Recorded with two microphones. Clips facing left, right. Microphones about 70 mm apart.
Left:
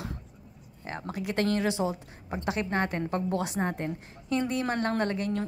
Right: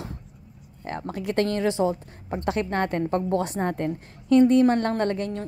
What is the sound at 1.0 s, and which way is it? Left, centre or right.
Speech, right.